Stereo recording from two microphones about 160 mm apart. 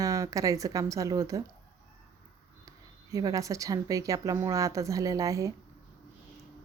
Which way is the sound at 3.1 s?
20° right (ahead or behind).